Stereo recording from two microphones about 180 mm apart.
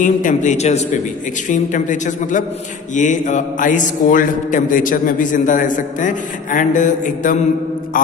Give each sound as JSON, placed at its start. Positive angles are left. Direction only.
{"t": 0.0, "sound": "a man's voice", "side_deg": 45}